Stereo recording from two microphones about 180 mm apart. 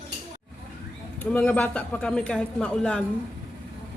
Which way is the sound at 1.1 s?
10° left (ahead or behind).